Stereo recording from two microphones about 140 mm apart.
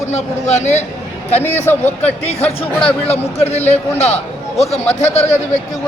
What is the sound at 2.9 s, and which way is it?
A man's voice, 45° left (ahead or behind).